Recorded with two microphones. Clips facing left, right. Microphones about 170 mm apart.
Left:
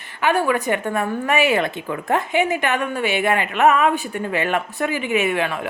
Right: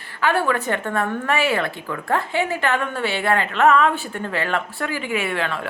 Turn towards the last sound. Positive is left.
turn(degrees=15)  # may be behind; listen again after turning